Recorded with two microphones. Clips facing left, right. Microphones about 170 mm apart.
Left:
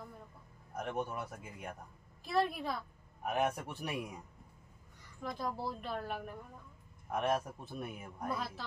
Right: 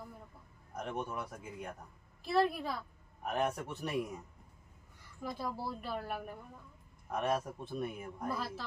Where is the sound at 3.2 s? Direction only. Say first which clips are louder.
Even; 10° left (ahead or behind).